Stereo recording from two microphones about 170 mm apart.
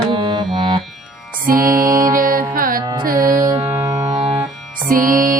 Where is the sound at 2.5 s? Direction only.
55° right (ahead or behind).